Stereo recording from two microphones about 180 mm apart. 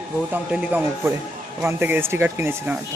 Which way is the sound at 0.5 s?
5° right (ahead or behind).